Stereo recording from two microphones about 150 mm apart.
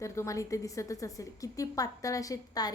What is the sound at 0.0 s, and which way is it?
A woman's voice, 20° left (ahead or behind).